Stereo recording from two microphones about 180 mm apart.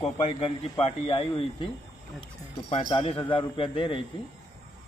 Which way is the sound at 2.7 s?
35° left (ahead or behind).